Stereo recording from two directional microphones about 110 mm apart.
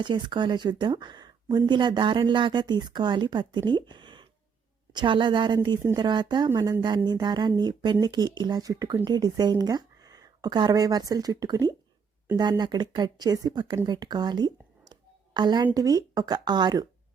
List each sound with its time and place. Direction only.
0.0 s speech: 45° right (ahead or behind)